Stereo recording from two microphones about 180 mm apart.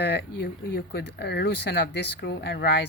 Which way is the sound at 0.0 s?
60° left (ahead or behind).